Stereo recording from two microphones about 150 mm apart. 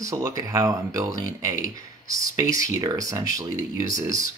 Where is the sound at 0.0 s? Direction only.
25° right (ahead or behind).